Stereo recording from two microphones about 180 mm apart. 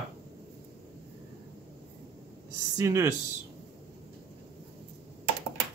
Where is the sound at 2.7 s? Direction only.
15° right (ahead or behind).